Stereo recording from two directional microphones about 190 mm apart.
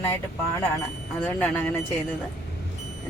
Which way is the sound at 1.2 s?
10° left (ahead or behind).